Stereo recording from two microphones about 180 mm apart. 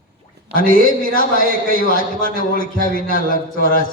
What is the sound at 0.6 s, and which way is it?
A man's voice, 50° left (ahead or behind).